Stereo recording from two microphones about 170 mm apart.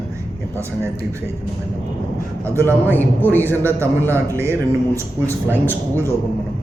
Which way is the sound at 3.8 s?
15° right (ahead or behind).